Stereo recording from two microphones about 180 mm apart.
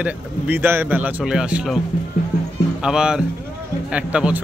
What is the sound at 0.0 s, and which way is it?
Speech, 10° right (ahead or behind).